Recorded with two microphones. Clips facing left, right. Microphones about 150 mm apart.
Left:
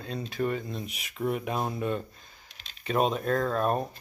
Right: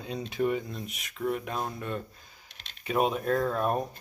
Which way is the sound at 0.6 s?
5° left (ahead or behind).